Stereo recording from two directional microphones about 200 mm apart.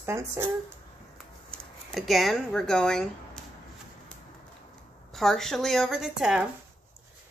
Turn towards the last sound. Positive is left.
turn(degrees=-5)  # may be behind; listen again after turning